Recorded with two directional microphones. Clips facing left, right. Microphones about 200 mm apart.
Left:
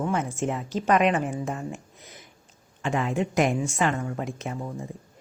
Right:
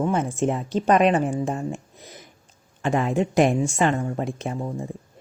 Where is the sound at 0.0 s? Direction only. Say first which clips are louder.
Right 4 dB; 25° right (ahead or behind).